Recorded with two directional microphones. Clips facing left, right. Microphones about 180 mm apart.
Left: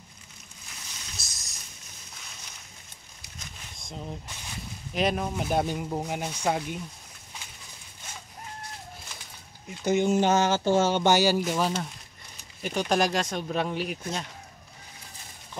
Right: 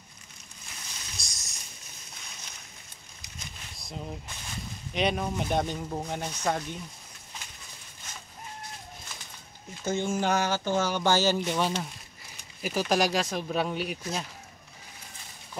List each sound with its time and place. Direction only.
1.1 s a sound: centre (ahead or behind)
3.8 s speech: centre (ahead or behind)
9.8 s speech: 20° left (ahead or behind); by 14.2 s centre (ahead or behind)